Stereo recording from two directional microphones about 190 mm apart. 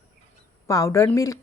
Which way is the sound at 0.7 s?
15° left (ahead or behind).